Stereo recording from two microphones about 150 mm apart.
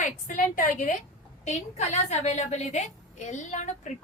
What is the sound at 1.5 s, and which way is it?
A woman's voice, 50° left (ahead or behind).